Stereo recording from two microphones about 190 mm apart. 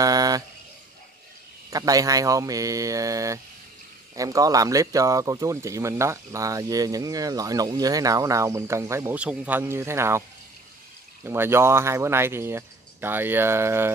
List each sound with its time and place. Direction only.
0.0 s a sound: 20° right (ahead or behind)
1.7 s speech: 20° right (ahead or behind)
11.2 s speech: 10° right (ahead or behind)